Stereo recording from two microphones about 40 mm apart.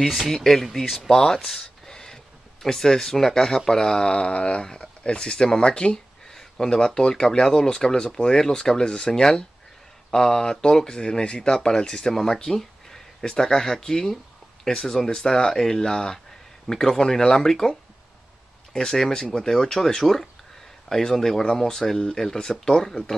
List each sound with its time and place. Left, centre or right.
0.3 s speech: centre
1.6 s a sound: centre
2.6 s speech: centre
6.3 s speech: centre